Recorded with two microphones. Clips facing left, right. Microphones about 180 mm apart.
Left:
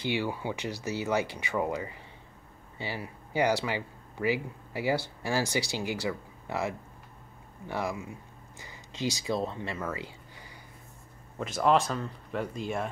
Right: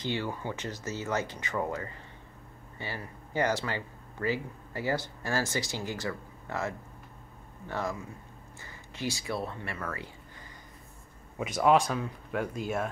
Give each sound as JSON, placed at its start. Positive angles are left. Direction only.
{"t": 0.0, "sound": "speech", "side_deg": 10}
{"t": 11.3, "sound": "speech", "side_deg": -5}